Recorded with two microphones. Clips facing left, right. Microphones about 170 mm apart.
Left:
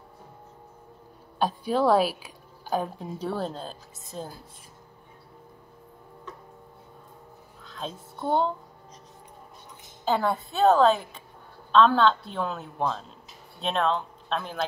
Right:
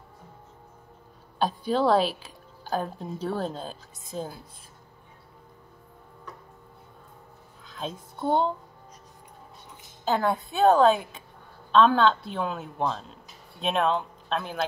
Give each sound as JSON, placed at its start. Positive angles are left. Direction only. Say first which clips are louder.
{"t": 1.4, "sound": "a woman's voice", "louder": "even", "side_deg": 5}
{"t": 3.4, "sound": "a woman's voice", "louder": "right 1 dB", "side_deg": -5}
{"t": 7.6, "sound": "a child's voice", "louder": "right 1 dB", "side_deg": -5}
{"t": 10.1, "sound": "a woman's voice", "louder": "right 1 dB", "side_deg": 0}